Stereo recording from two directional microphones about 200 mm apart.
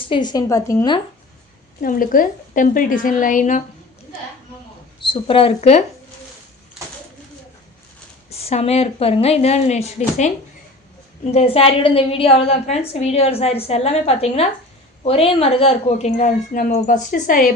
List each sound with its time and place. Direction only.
0.1 s a woman's voice: 20° left (ahead or behind)
1.8 s a woman's voice: 45° left (ahead or behind)
4.9 s speech: 25° left (ahead or behind)
8.3 s a woman's voice: 30° left (ahead or behind)
11.2 s a woman's voice: 35° left (ahead or behind)